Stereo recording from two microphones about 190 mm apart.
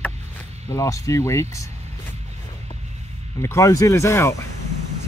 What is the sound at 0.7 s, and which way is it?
Speech, 15° left (ahead or behind).